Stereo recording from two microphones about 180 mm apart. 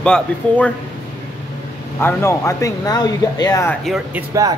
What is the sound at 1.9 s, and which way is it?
Speech, 15° left (ahead or behind).